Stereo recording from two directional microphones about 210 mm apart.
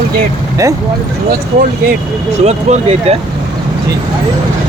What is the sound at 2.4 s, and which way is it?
Speech, 30° right (ahead or behind).